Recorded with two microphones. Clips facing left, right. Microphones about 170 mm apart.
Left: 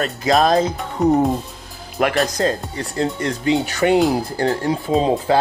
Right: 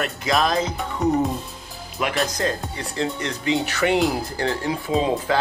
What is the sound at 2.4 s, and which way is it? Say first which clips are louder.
Speech: left 5 dB; 35° left (ahead or behind).